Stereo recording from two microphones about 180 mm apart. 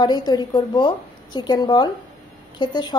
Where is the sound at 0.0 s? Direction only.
25° left (ahead or behind).